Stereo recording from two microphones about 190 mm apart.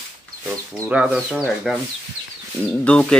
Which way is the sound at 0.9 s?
5° right (ahead or behind).